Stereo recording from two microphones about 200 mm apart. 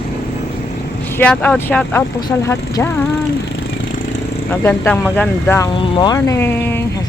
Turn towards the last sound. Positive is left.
turn(degrees=10)  # may be behind; listen again after turning